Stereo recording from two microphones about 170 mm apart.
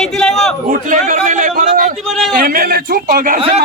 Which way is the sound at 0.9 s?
50° right (ahead or behind).